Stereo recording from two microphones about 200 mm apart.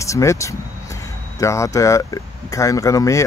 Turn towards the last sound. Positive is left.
turn(degrees=15)  # may be behind; listen again after turning